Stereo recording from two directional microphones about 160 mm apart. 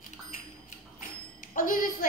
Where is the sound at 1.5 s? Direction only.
60° left (ahead or behind).